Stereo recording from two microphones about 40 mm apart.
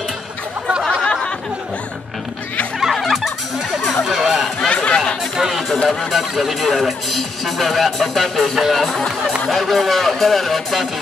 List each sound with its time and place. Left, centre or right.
2.8 s a sound: centre
4.0 s a sound: centre
4.6 s chatter: left
5.9 s music: centre
8.5 s speech: centre
8.8 s speech: centre
9.5 s music: centre